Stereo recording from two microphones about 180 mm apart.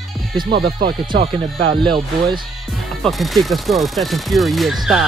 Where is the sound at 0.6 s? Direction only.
30° right (ahead or behind).